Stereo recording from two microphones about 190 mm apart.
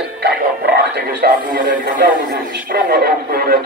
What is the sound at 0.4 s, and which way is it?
Music, 50° right (ahead or behind).